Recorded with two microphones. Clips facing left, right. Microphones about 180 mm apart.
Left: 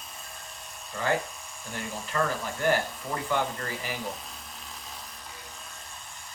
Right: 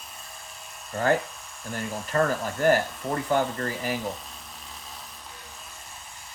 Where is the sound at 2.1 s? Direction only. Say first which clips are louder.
Right 5 dB; 45° right (ahead or behind).